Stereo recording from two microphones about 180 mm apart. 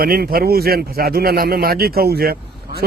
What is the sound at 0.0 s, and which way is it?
A man's voice, 55° right (ahead or behind).